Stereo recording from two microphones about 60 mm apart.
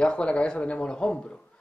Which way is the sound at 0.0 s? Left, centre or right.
Centre.